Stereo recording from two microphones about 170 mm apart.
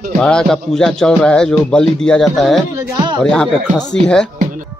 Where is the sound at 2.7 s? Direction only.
25° right (ahead or behind).